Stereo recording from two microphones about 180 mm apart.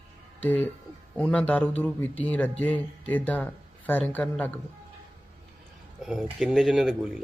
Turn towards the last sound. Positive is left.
turn(degrees=0)  # may be behind; listen again after turning